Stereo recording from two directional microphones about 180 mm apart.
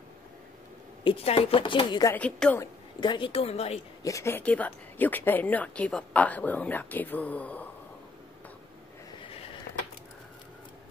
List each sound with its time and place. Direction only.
1.0 s speech: 30° left (ahead or behind)
2.1 s speech: 10° left (ahead or behind)
3.0 s a woman's voice: 25° left (ahead or behind)
4.0 s speech: 15° left (ahead or behind)
9.2 s a sound: 30° left (ahead or behind)